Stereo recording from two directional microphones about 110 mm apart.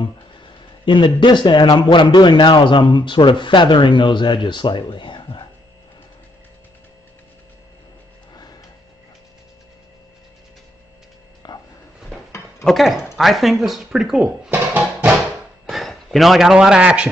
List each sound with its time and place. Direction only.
0.0 s speech: 45° left (ahead or behind)
11.4 s a sound: 40° left (ahead or behind)
12.6 s speech: centre (ahead or behind)
14.5 s music: 15° right (ahead or behind)
15.6 s speech: centre (ahead or behind)